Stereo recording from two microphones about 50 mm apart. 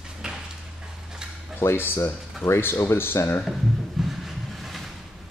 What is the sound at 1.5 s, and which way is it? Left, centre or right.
Speech, left.